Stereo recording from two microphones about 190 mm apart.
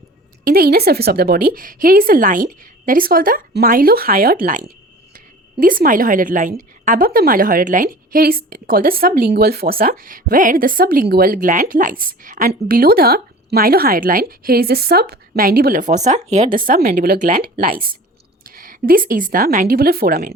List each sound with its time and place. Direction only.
0.4 s a woman's voice: 55° right (ahead or behind)